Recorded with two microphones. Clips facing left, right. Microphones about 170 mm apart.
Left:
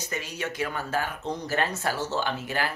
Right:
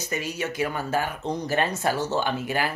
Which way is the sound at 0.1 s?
10° right (ahead or behind).